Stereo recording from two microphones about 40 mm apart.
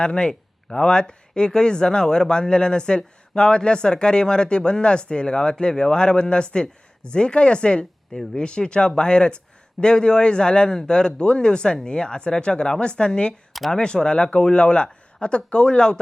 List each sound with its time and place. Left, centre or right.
0.0 s speech: left
8.1 s speech: centre
8.4 s speech: left